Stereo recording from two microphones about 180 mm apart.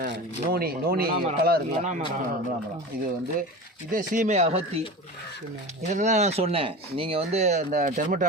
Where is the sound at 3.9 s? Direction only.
45° right (ahead or behind).